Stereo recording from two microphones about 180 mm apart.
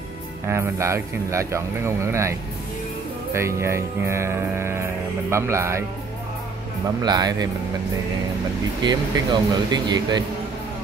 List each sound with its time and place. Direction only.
0.5 s speech: 15° right (ahead or behind)
3.3 s speech: 15° right (ahead or behind)
7.0 s speech: 20° right (ahead or behind)
8.8 s speech: 25° right (ahead or behind)